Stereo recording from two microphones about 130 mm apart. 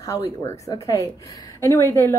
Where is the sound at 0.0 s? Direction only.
30° left (ahead or behind).